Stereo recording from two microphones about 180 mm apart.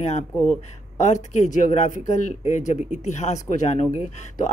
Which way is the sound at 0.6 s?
40° left (ahead or behind).